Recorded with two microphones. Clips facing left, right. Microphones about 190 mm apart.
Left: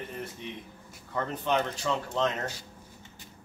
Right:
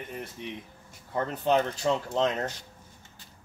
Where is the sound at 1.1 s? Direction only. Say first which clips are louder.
Right 3 dB; 35° right (ahead or behind).